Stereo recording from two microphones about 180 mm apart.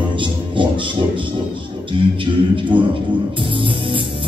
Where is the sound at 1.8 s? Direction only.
30° right (ahead or behind).